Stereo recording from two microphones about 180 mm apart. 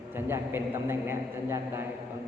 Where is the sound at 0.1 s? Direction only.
15° right (ahead or behind).